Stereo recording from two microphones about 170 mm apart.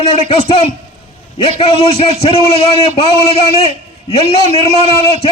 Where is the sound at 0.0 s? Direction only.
35° left (ahead or behind).